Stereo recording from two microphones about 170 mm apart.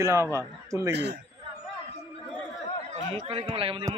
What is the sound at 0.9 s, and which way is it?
Speech, 75° right (ahead or behind).